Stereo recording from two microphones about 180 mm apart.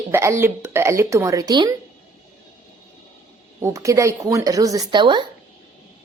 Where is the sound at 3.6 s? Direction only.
15° right (ahead or behind).